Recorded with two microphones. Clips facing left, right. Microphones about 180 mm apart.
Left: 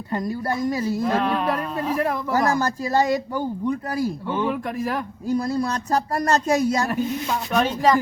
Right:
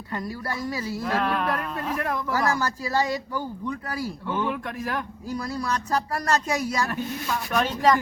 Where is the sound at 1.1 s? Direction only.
Centre (ahead or behind).